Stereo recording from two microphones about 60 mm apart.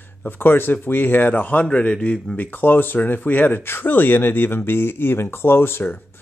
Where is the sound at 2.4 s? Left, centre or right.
Left.